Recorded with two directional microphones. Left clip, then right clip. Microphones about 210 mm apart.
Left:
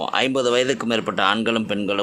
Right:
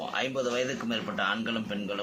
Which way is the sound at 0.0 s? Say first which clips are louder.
Left 10 dB; 55° left (ahead or behind).